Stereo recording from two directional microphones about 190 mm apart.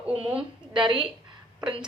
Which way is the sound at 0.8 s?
25° right (ahead or behind).